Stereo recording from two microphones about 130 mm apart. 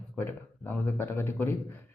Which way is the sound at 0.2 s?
15° left (ahead or behind).